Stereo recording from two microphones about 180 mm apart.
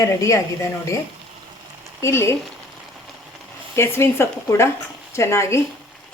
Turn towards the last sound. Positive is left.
turn(degrees=15)  # may be behind; listen again after turning